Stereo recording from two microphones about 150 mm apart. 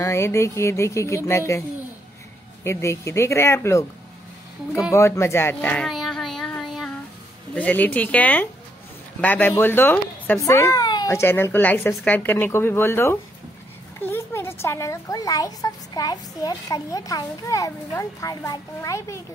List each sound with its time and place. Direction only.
0.0 s speech: 20° left (ahead or behind)
2.6 s speech: 20° left (ahead or behind)
4.9 s speech: 20° left (ahead or behind)
5.9 s child singing: centre (ahead or behind)
7.5 s speech: 10° left (ahead or behind)